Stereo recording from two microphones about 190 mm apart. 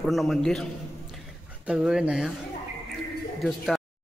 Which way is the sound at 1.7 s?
5° right (ahead or behind).